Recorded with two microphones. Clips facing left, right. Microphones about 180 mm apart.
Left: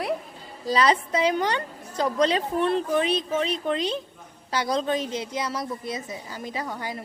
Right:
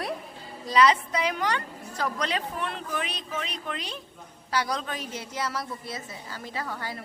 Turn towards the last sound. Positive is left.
turn(degrees=15)  # may be behind; listen again after turning